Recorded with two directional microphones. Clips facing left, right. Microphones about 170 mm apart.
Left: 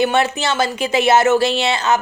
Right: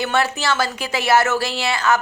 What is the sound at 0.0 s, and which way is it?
Speech, 20° left (ahead or behind).